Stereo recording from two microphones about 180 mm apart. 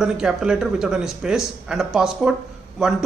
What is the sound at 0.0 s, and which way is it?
Speech, 5° right (ahead or behind).